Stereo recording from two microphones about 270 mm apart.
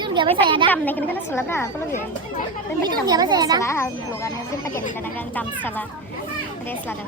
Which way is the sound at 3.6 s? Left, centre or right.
Centre.